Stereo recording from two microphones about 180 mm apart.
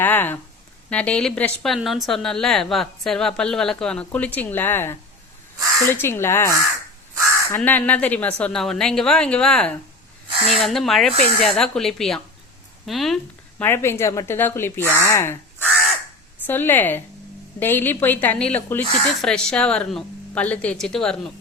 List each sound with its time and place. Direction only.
0.0 s a sound: 10° left (ahead or behind)
0.9 s a woman's voice: 5° left (ahead or behind)
7.5 s a woman's voice: 10° left (ahead or behind)
13.6 s speech: 15° left (ahead or behind)
16.5 s speech: 10° left (ahead or behind)